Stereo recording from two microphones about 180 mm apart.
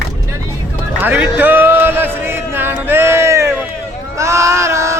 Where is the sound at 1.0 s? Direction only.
10° right (ahead or behind).